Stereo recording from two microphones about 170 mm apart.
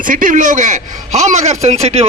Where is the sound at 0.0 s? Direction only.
50° right (ahead or behind).